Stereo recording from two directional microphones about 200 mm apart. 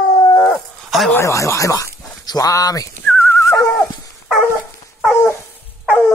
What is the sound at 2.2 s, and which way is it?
Dog, 20° left (ahead or behind).